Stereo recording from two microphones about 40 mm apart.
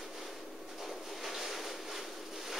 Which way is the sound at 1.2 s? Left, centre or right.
Centre.